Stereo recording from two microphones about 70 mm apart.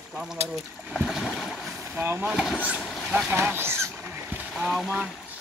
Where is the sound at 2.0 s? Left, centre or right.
Right.